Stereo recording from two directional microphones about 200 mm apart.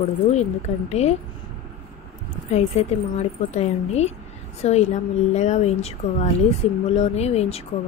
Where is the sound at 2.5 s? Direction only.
35° left (ahead or behind).